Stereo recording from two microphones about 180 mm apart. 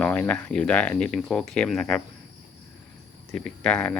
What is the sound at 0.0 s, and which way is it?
Speech, 5° left (ahead or behind).